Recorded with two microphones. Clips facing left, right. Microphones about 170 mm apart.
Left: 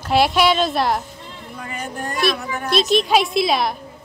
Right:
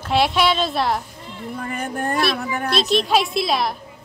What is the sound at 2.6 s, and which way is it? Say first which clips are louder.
A woman's voice: left 3 dB; centre (ahead or behind).